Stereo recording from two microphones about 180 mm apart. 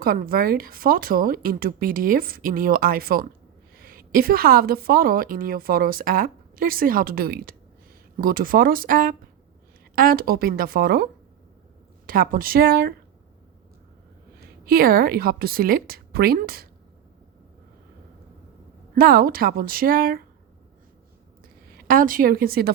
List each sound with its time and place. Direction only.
0.0 s a woman's voice: 55° right (ahead or behind)
14.6 s speech: 55° right (ahead or behind)
18.9 s speech: 55° right (ahead or behind)
21.7 s a woman's voice: 50° right (ahead or behind)